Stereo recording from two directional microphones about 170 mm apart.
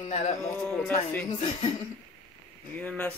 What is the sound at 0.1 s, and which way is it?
Speech, 45° left (ahead or behind).